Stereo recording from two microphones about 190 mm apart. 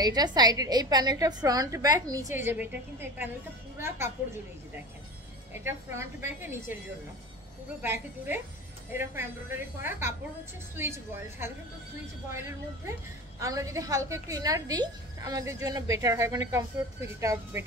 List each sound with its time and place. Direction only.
0.0 s a woman's voice: 20° right (ahead or behind)
7.8 s a woman's voice: 10° right (ahead or behind)
13.4 s a woman's voice: 15° right (ahead or behind)